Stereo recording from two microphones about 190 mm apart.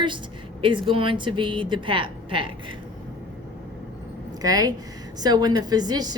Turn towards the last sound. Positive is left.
turn(degrees=-20)  # may be behind; listen again after turning